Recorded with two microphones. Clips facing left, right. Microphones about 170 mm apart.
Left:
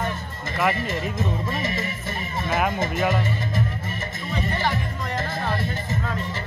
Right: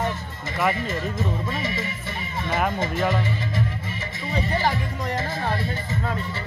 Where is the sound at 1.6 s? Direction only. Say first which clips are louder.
Left 1 dB; 45° left (ahead or behind).